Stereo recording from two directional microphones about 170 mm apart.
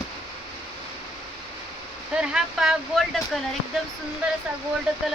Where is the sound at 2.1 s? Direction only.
5° right (ahead or behind).